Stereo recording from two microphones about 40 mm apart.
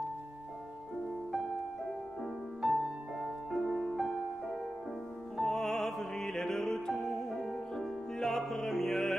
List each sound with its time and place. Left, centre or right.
2.6 s music: centre
5.4 s music: centre